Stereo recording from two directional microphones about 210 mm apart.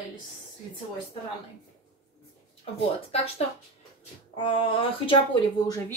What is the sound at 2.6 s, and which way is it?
Speech, 25° left (ahead or behind).